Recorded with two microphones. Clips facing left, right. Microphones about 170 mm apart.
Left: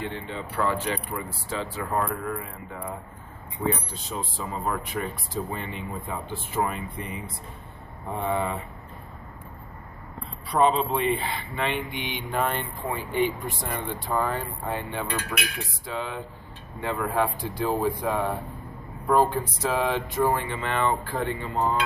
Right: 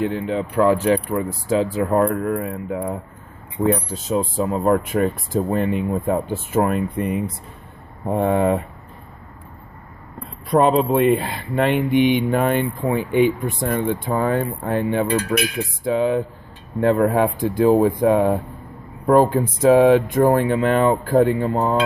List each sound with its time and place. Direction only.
0.0 s speech: 45° right (ahead or behind); by 2.9 s 70° right (ahead or behind)
3.7 s speech: 45° right (ahead or behind)
4.4 s speech: 55° right (ahead or behind)
10.5 s speech: 50° right (ahead or behind)